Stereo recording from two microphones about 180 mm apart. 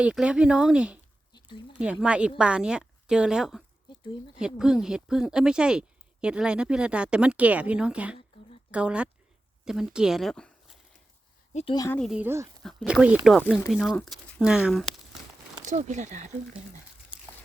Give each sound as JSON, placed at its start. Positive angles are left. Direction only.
{"t": 0.0, "sound": "speech", "side_deg": -5}
{"t": 1.3, "sound": "a sound", "side_deg": 25}
{"t": 1.7, "sound": "speech", "side_deg": -5}
{"t": 11.5, "sound": "a woman's voice", "side_deg": 25}
{"t": 11.9, "sound": "speech", "side_deg": 5}
{"t": 12.1, "sound": "speech", "side_deg": -10}
{"t": 15.6, "sound": "speech", "side_deg": -40}